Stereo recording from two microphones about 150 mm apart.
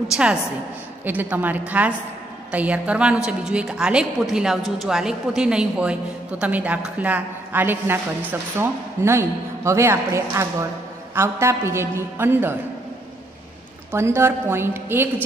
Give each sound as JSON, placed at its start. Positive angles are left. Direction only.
{"t": 1.0, "sound": "a woman's voice", "side_deg": -10}
{"t": 13.9, "sound": "a woman's voice", "side_deg": -15}